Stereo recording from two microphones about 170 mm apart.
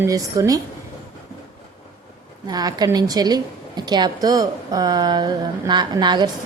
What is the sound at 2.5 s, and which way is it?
A woman's voice, 25° right (ahead or behind).